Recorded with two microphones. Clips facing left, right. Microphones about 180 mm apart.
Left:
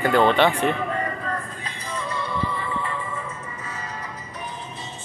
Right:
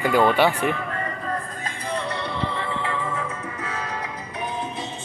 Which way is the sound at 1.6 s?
55° right (ahead or behind).